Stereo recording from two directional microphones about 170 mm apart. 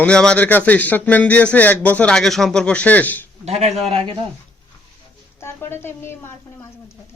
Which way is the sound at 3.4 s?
40° right (ahead or behind).